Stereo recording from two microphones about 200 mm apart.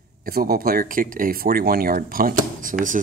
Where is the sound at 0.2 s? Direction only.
50° right (ahead or behind).